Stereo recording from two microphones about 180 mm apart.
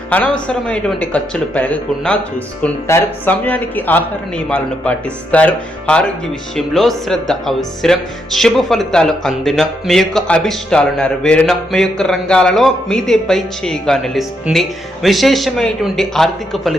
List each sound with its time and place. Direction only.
0.1 s speech: 5° left (ahead or behind)